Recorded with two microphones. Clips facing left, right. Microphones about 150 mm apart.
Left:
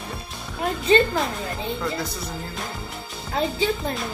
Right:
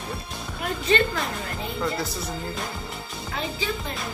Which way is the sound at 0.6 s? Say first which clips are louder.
Left 4 dB; 30° left (ahead or behind).